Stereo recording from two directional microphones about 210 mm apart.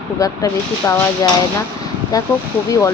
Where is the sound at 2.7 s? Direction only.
15° left (ahead or behind).